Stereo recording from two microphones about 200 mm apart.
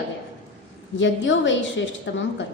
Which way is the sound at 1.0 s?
65° left (ahead or behind).